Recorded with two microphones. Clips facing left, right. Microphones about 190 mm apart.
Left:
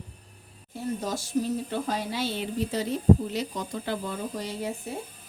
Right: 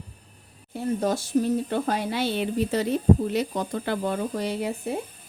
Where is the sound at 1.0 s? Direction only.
60° right (ahead or behind).